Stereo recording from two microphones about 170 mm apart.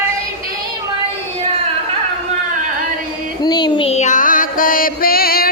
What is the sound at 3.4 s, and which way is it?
Music, 25° left (ahead or behind).